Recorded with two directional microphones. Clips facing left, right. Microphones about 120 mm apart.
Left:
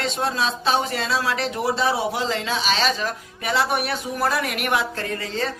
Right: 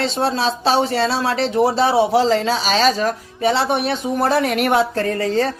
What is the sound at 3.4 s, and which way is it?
Speech, 30° right (ahead or behind).